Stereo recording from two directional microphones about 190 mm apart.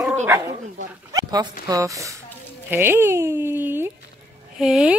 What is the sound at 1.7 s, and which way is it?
A woman's voice, 15° right (ahead or behind).